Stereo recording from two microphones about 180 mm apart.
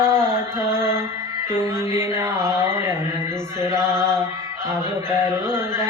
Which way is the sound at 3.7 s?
15° right (ahead or behind).